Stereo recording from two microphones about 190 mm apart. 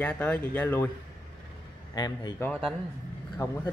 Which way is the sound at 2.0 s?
20° left (ahead or behind).